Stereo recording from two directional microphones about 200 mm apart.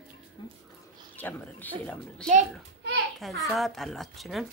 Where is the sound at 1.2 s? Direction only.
10° left (ahead or behind).